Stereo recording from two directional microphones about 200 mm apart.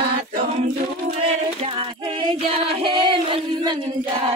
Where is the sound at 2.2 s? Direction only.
30° right (ahead or behind).